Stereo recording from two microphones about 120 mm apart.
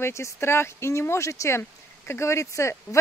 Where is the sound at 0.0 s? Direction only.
20° left (ahead or behind).